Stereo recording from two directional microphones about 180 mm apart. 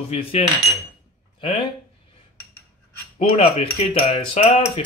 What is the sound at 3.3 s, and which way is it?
Speech, 35° left (ahead or behind).